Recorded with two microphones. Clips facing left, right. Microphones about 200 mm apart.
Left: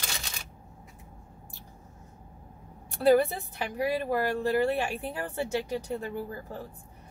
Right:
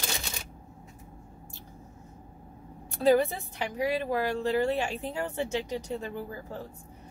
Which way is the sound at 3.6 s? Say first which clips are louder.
Even; 15° right (ahead or behind).